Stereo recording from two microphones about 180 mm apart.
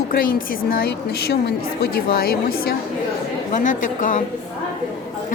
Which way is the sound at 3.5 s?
45° left (ahead or behind).